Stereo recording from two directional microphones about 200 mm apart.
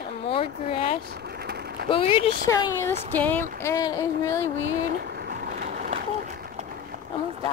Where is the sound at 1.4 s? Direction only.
55° right (ahead or behind).